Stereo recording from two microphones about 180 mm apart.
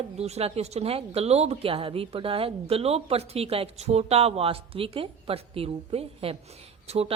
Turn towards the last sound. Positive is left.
turn(degrees=-35)  # may be behind; listen again after turning